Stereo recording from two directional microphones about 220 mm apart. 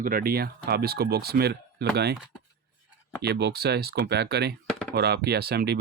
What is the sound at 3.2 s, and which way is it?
Speech, 50° right (ahead or behind).